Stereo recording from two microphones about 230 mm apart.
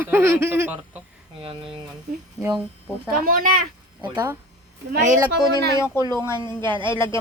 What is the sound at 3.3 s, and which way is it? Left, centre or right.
Speech, right.